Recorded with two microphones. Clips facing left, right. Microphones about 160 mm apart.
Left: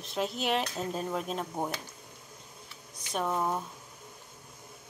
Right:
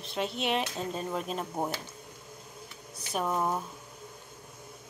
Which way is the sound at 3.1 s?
5° right (ahead or behind).